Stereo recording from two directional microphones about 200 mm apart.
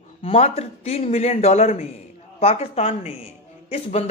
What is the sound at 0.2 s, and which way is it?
A man's voice, 30° left (ahead or behind).